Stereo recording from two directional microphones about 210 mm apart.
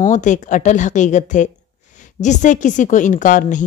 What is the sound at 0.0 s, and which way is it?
A woman's voice, 35° left (ahead or behind).